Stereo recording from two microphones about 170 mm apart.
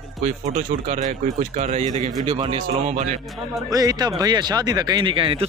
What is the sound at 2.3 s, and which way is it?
Speech, 30° right (ahead or behind).